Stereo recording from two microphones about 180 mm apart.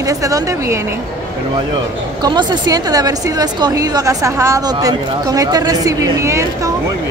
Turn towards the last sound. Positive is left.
turn(degrees=-15)  # may be behind; listen again after turning